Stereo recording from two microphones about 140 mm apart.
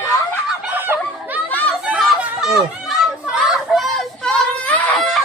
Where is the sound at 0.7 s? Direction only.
15° right (ahead or behind).